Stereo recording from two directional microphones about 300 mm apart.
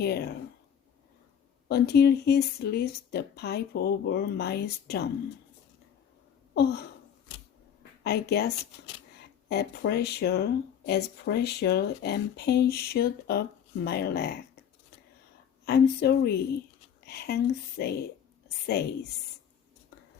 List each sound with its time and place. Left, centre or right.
0.0 s speech: left
1.6 s speech: left
6.5 s a sound: left
8.0 s speech: left
9.5 s speech: left
15.6 s speech: left